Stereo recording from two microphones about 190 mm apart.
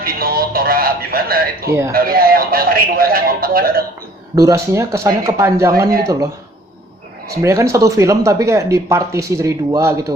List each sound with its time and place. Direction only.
0.0 s music: 50° right (ahead or behind)
1.9 s speech: 50° right (ahead or behind)
4.4 s speech: 15° right (ahead or behind)
7.4 s speech: 15° right (ahead or behind)